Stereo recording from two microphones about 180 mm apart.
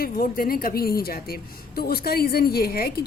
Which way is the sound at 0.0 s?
55° left (ahead or behind).